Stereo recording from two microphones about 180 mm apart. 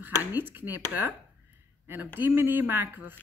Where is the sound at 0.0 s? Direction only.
10° right (ahead or behind).